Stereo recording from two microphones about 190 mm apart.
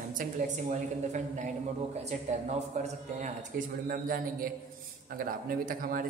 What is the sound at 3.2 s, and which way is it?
A man's voice, 45° right (ahead or behind).